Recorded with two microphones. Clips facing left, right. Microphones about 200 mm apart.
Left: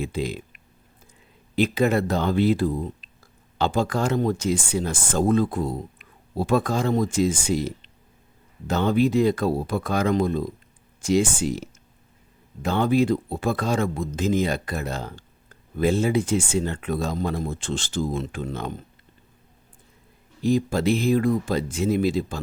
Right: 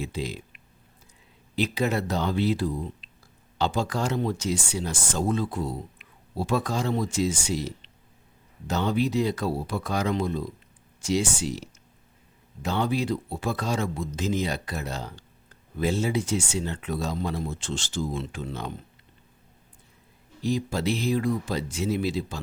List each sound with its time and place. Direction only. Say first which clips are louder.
0.0 s speech: left 4 dB; 55° left (ahead or behind)
20.4 s speech: left 5 dB; 50° left (ahead or behind)